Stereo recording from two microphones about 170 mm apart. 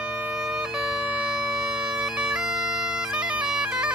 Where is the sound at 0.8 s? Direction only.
5° right (ahead or behind).